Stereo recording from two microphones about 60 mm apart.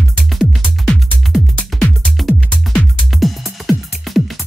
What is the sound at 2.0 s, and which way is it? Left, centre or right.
Music, centre.